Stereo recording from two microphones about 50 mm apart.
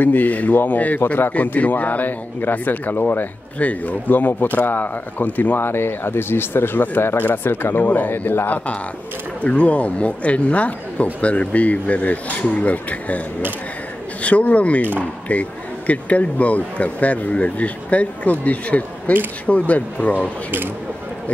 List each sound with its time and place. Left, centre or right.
0.0 s a man's voice: left
7.2 s a man's voice: left
9.4 s speech: left
14.2 s speech: left
15.9 s speech: left